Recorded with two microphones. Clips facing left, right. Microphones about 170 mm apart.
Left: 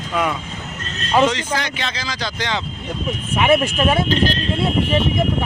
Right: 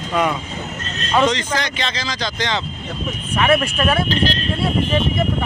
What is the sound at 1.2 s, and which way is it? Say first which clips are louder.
Speech: right 1 dB; 10° left (ahead or behind).